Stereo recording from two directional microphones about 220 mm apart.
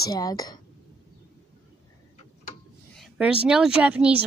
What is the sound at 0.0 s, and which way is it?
Speech, 15° left (ahead or behind).